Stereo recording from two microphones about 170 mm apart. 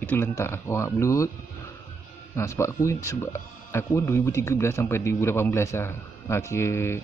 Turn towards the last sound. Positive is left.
turn(degrees=15)  # may be behind; listen again after turning